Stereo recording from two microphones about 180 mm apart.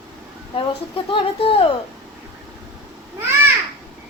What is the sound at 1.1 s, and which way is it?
Speech, 30° left (ahead or behind).